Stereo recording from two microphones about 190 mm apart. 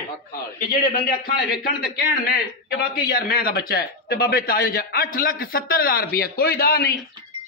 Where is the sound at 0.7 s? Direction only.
50° left (ahead or behind).